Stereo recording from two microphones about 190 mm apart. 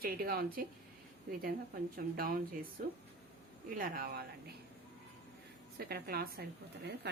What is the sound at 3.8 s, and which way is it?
Speech, 50° right (ahead or behind).